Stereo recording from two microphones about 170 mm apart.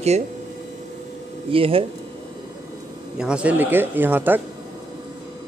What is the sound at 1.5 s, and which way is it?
Speech, 35° right (ahead or behind).